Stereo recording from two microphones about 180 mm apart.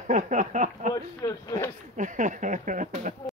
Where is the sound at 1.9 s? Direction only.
45° right (ahead or behind).